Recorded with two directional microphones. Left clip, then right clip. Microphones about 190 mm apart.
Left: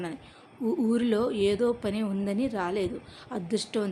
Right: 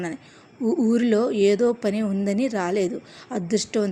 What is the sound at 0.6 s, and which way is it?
Speech, centre (ahead or behind).